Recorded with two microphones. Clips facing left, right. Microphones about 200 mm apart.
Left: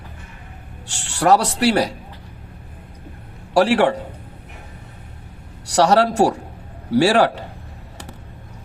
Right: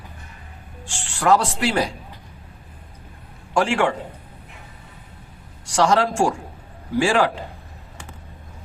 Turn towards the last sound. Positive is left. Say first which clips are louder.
# left 4 dB
turn(degrees=35)  # may be behind; listen again after turning